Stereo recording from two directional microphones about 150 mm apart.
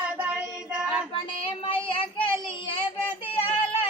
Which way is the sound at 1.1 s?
35° left (ahead or behind).